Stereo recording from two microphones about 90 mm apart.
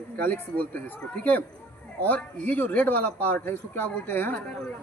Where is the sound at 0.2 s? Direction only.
20° left (ahead or behind).